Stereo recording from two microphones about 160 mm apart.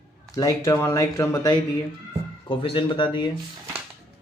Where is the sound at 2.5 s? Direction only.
30° left (ahead or behind).